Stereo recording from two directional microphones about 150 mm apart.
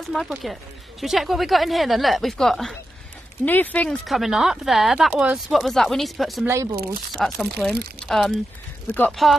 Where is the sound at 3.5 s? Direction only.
10° left (ahead or behind).